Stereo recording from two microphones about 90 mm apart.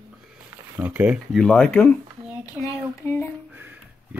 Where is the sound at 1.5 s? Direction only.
10° left (ahead or behind).